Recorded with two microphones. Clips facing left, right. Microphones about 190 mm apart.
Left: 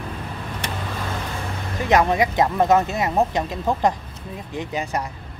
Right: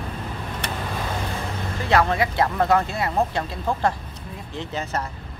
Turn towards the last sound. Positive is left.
turn(degrees=15)  # may be behind; listen again after turning